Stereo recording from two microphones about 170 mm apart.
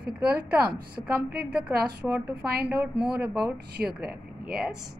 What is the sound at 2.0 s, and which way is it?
A woman's voice, 10° right (ahead or behind).